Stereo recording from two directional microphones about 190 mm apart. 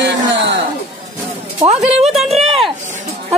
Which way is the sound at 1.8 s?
5° right (ahead or behind).